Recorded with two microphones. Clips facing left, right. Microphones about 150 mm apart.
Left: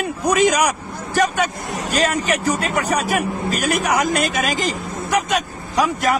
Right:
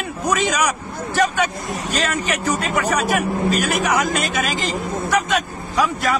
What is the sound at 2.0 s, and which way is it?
A man's voice, 40° left (ahead or behind).